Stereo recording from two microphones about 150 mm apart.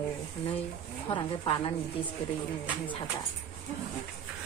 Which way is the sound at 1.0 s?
40° left (ahead or behind).